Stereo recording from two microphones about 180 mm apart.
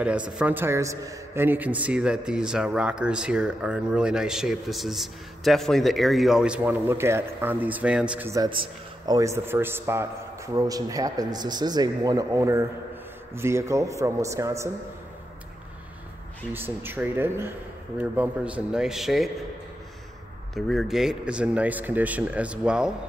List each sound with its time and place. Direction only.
0.0 s a man's voice: 5° right (ahead or behind)
8.5 s a man's voice: 25° right (ahead or behind)
16.5 s speech: 10° right (ahead or behind)
20.5 s a man's voice: centre (ahead or behind)